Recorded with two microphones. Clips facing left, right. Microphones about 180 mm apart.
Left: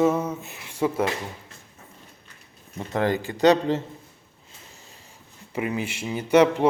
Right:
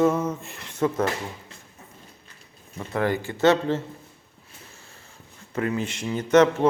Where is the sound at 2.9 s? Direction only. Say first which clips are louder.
Left 1 dB; 20° left (ahead or behind).